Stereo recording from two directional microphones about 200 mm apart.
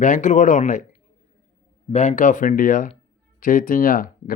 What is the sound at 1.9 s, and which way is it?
A man's voice, 35° left (ahead or behind).